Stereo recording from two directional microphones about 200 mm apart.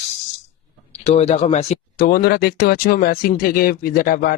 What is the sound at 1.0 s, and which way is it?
Speech, 35° left (ahead or behind).